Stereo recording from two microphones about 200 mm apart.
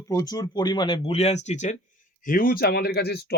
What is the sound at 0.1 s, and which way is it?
Speech, 20° left (ahead or behind).